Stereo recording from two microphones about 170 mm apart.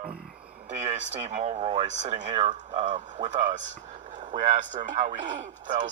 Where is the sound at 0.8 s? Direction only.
45° right (ahead or behind).